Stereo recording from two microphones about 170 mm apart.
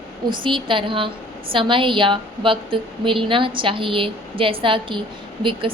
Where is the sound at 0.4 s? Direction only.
30° right (ahead or behind).